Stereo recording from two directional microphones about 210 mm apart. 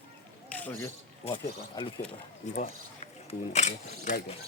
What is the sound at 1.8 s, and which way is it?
Speech, 15° left (ahead or behind).